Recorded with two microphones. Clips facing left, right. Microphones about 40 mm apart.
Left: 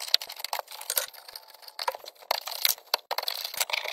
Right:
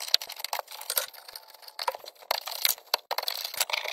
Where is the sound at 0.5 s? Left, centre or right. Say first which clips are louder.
Even; centre.